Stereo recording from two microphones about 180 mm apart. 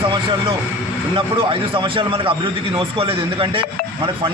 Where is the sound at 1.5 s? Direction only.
30° right (ahead or behind).